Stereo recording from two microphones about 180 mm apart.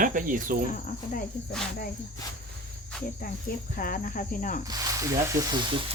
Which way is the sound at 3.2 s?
55° left (ahead or behind).